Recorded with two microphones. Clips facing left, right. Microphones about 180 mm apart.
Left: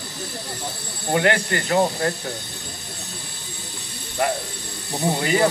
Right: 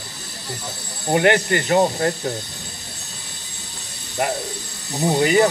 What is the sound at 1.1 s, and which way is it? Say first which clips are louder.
A man's voice: right 3 dB; 20° right (ahead or behind).